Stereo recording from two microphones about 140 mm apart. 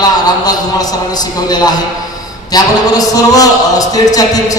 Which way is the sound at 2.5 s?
30° left (ahead or behind).